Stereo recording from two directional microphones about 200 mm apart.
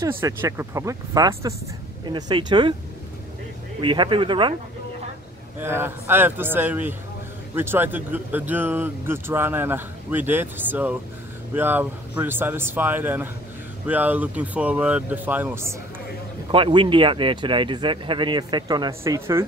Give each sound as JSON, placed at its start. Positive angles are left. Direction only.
{"t": 0.2, "sound": "speech", "side_deg": -10}
{"t": 3.8, "sound": "speech", "side_deg": -25}
{"t": 5.6, "sound": "speech", "side_deg": -10}
{"t": 16.5, "sound": "speech", "side_deg": -25}